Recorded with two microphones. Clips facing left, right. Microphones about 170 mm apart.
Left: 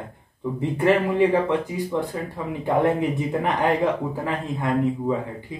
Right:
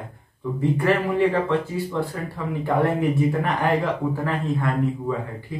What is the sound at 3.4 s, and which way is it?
A man's voice, 20° left (ahead or behind).